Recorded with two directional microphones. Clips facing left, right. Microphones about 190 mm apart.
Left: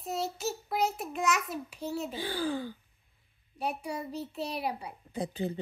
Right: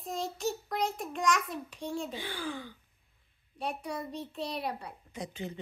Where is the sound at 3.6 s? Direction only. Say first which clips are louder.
Left 2 dB; 10° left (ahead or behind).